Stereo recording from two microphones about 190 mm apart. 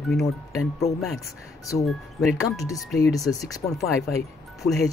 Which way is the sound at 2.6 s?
15° left (ahead or behind).